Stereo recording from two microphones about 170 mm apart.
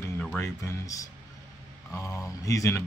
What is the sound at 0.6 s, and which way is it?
Speech, 20° left (ahead or behind).